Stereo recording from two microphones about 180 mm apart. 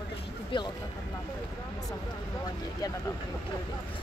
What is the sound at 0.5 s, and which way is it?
Speech, 25° left (ahead or behind).